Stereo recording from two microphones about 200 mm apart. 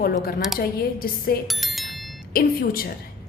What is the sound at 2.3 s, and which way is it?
Speech, 45° left (ahead or behind).